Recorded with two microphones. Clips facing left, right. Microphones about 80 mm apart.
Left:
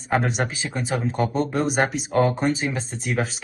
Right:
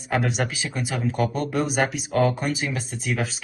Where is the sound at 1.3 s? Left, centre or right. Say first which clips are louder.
Left 2 dB; centre.